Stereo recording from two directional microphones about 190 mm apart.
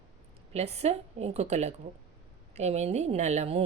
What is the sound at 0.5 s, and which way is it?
Speech, 35° right (ahead or behind).